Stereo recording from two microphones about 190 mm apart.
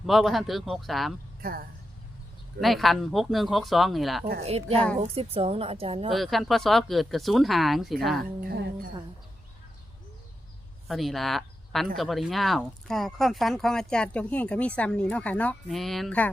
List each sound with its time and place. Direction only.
0.0 s speech: centre (ahead or behind)
1.4 s speech: 50° right (ahead or behind)
2.6 s speech: centre (ahead or behind)
4.4 s a woman's voice: 30° right (ahead or behind)
6.1 s speech: centre (ahead or behind)
8.2 s a woman's voice: 55° right (ahead or behind)
10.8 s a woman's voice: centre (ahead or behind)